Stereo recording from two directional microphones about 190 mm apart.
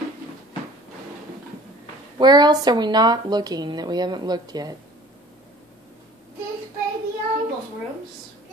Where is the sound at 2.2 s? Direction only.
20° right (ahead or behind).